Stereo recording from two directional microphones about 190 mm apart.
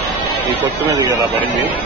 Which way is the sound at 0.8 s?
15° right (ahead or behind).